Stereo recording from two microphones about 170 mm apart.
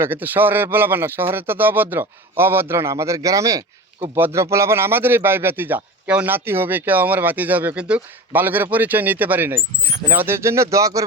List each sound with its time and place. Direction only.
0.0 s speech: 10° right (ahead or behind)